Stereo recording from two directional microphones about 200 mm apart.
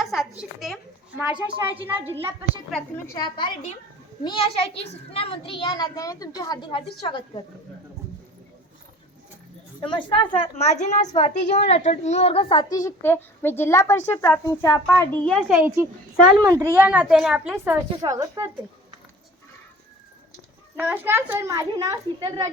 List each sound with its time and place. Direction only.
0.0 s a sound: centre (ahead or behind)
1.7 s a child's voice: 25° right (ahead or behind)
2.4 s a woman's voice: centre (ahead or behind)
3.1 s a child's voice: 20° left (ahead or behind)
9.8 s a child's voice: 25° left (ahead or behind); by 15.5 s 5° left (ahead or behind)
15.5 s a child's voice: 10° right (ahead or behind)
18.0 s a child's voice: 15° right (ahead or behind)
20.7 s a child's voice: 10° right (ahead or behind)